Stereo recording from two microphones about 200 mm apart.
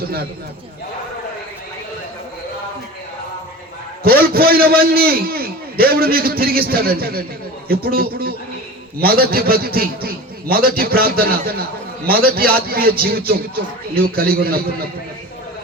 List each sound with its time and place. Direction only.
0.0 s a man's voice: 50° right (ahead or behind)
4.0 s a man's voice: 50° right (ahead or behind)